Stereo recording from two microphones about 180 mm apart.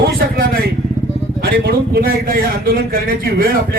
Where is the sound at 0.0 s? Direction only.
60° right (ahead or behind).